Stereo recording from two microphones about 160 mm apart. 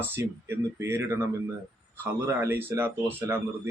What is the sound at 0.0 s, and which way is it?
Speech, 15° right (ahead or behind).